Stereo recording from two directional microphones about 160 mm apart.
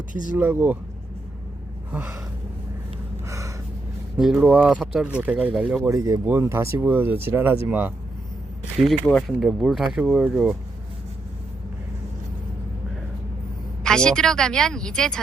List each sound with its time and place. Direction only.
0.3 s speech: 10° right (ahead or behind)
1.9 s speech: 15° right (ahead or behind)
3.2 s gasp: 20° right (ahead or behind)
4.2 s speech: 5° right (ahead or behind)
9.1 s speech: centre (ahead or behind)
13.8 s speech: 5° left (ahead or behind)